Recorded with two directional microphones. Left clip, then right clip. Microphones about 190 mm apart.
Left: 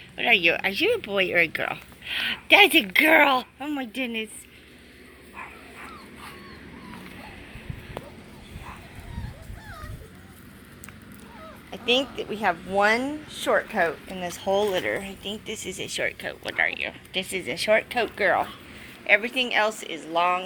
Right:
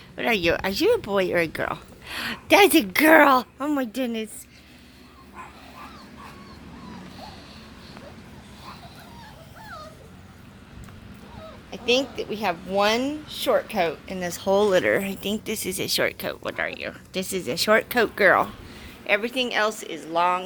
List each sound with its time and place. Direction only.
0.2 s speech: 30° right (ahead or behind)
11.7 s speech: centre (ahead or behind); by 20.4 s 20° right (ahead or behind)